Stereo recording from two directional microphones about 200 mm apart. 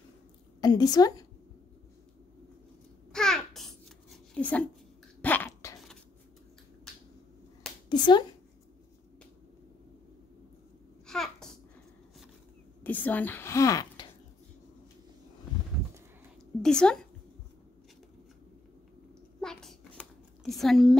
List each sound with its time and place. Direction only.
0.6 s a woman's voice: 20° left (ahead or behind)
3.1 s babbling: 5° left (ahead or behind)
5.2 s dog: 10° left (ahead or behind)
7.9 s a sound: 20° left (ahead or behind)
11.1 s babbling: 5° left (ahead or behind)
12.8 s speech: 10° left (ahead or behind)
16.6 s a woman's voice: 5° left (ahead or behind)
19.4 s a sound: 5° left (ahead or behind)